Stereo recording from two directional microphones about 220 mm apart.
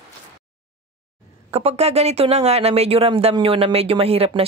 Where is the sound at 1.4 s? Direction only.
30° right (ahead or behind).